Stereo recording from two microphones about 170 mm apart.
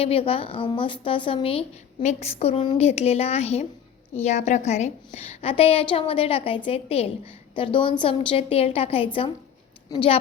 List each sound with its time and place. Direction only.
0.0 s a woman's voice: 35° left (ahead or behind)